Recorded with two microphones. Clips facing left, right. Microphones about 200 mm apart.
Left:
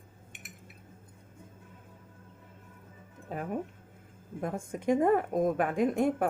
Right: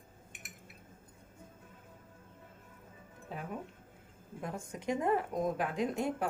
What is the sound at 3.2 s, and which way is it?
A man's voice, 50° left (ahead or behind).